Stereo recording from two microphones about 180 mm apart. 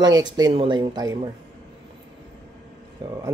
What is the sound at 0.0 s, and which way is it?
Speech, 20° right (ahead or behind).